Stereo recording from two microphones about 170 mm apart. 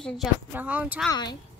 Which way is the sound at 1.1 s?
25° left (ahead or behind).